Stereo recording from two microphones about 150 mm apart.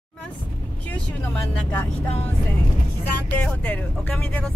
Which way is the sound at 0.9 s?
10° left (ahead or behind).